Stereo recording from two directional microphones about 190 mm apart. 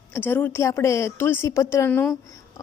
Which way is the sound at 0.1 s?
10° left (ahead or behind).